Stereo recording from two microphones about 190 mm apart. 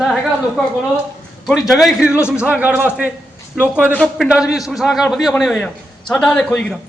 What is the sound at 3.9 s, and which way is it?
A man's voice, 5° left (ahead or behind).